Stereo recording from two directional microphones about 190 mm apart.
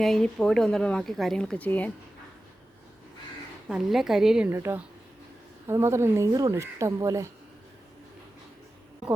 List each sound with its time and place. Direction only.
0.0 s a woman's voice: 5° left (ahead or behind)
3.7 s a woman's voice: 5° right (ahead or behind)